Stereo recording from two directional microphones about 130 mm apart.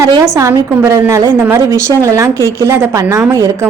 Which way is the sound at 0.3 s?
25° right (ahead or behind).